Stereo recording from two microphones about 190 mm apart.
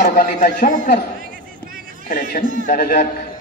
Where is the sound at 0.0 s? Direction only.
45° left (ahead or behind).